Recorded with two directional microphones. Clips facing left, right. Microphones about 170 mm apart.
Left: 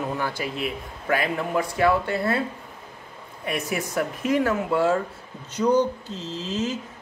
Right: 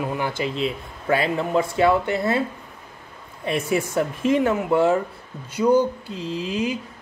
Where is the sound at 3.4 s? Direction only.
30° right (ahead or behind).